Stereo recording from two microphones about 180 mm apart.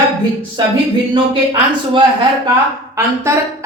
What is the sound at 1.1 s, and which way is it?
Speech, 25° right (ahead or behind).